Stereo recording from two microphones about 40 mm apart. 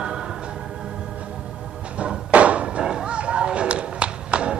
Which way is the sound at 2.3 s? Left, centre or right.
Right.